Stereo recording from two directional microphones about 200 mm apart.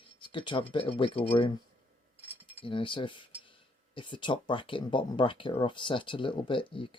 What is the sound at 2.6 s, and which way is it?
Speech, 25° left (ahead or behind).